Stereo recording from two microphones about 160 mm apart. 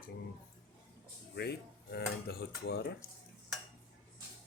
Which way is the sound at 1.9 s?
90° left.